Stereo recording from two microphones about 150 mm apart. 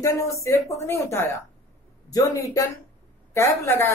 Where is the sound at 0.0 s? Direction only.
20° left (ahead or behind).